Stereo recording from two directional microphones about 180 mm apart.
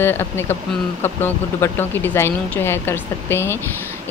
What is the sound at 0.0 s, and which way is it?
Speech, 10° left (ahead or behind).